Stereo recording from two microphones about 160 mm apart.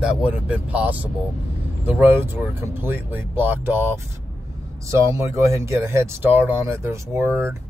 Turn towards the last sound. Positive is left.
turn(degrees=-15)  # may be behind; listen again after turning